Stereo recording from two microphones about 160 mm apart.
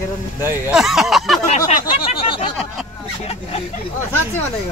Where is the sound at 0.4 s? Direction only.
15° right (ahead or behind).